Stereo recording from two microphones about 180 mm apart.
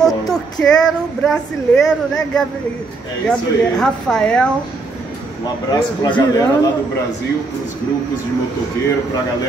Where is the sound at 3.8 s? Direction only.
5° left (ahead or behind).